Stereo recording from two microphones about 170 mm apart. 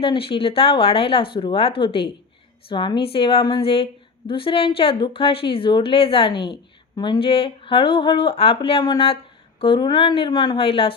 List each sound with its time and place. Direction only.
0.0 s a woman's voice: 35° left (ahead or behind)